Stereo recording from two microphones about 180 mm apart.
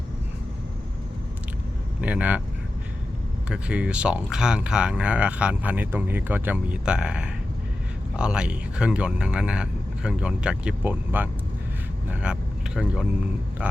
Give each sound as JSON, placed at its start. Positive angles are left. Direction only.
{"t": 2.0, "sound": "speech", "side_deg": -5}
{"t": 3.5, "sound": "speech", "side_deg": -5}